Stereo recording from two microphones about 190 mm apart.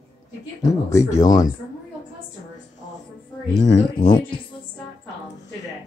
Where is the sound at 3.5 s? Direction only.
25° left (ahead or behind).